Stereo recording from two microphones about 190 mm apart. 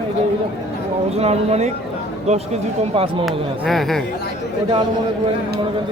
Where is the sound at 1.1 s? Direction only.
35° right (ahead or behind).